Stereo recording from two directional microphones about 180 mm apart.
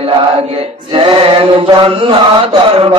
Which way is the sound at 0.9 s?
30° right (ahead or behind).